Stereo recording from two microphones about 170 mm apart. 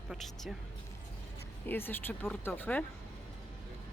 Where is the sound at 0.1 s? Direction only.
Centre (ahead or behind).